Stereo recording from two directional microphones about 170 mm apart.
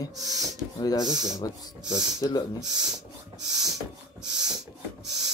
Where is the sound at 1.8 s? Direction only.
25° right (ahead or behind).